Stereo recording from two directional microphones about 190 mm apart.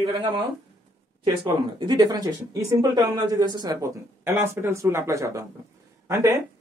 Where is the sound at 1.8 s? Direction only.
20° right (ahead or behind).